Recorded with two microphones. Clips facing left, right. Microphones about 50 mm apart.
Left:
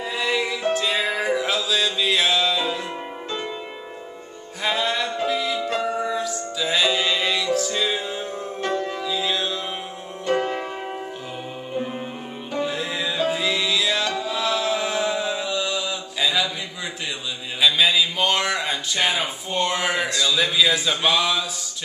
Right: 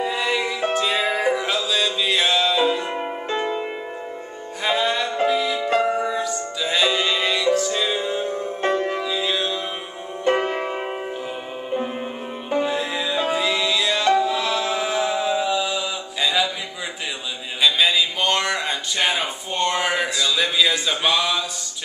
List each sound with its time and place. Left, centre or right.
0.0 s music: centre
2.9 s music: right
4.6 s music: centre
5.6 s music: right
6.0 s music: centre
8.5 s music: right
9.0 s music: centre
10.2 s music: right
12.6 s music: centre
17.6 s a sound: centre